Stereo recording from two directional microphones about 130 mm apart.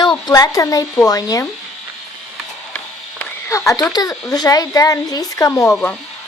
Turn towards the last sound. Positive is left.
turn(degrees=5)  # may be behind; listen again after turning